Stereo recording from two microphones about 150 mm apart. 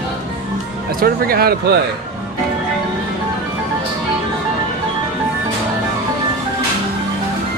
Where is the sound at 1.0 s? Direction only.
85° right.